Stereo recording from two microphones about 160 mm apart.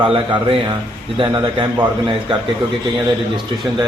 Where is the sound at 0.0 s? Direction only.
35° right (ahead or behind).